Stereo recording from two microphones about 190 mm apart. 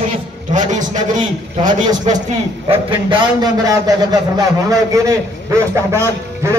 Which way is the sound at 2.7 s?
25° right (ahead or behind).